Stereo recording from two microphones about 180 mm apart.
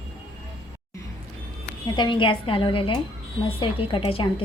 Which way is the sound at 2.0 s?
25° left (ahead or behind).